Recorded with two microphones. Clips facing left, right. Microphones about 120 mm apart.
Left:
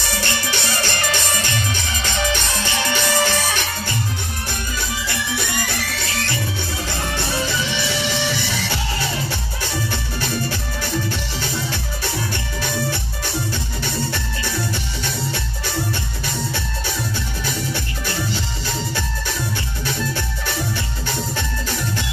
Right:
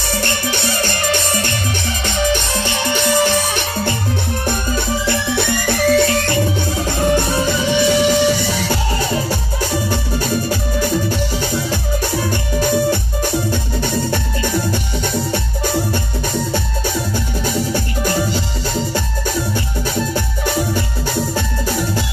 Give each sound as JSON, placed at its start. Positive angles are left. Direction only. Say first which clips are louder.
{"t": 0.2, "sound": "music", "louder": "right 4 dB", "side_deg": -50}
{"t": 2.6, "sound": "music", "louder": "right 4 dB", "side_deg": -20}
{"t": 4.5, "sound": "music", "louder": "right 8 dB", "side_deg": -60}
{"t": 12.3, "sound": "music", "louder": "right 8 dB", "side_deg": -45}
{"t": 15.3, "sound": "music", "louder": "right 7 dB", "side_deg": -45}
{"t": 17.5, "sound": "music", "louder": "right 7 dB", "side_deg": -40}
{"t": 20.2, "sound": "music", "louder": "right 7 dB", "side_deg": -40}